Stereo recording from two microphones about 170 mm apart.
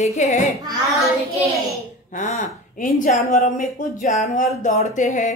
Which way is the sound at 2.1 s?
45° left (ahead or behind).